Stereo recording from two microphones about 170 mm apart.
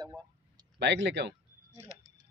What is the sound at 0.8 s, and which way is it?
Speech, 90° right.